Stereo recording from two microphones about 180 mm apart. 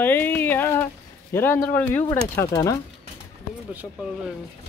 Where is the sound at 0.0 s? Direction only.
10° left (ahead or behind).